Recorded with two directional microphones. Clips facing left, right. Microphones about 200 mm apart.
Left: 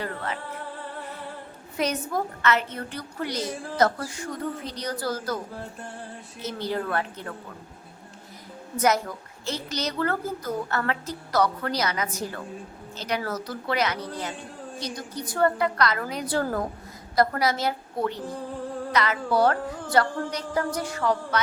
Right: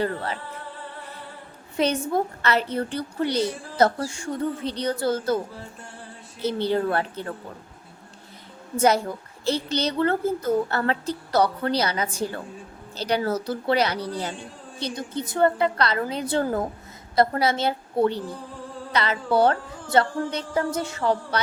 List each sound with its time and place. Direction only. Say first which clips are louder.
0.0 s a woman's voice: right 5 dB; 30° right (ahead or behind)
1.7 s a woman's voice: right 4 dB; 25° right (ahead or behind)
6.4 s a woman's voice: right 6 dB; 30° right (ahead or behind)
8.8 s a woman's voice: right 3 dB; 30° right (ahead or behind)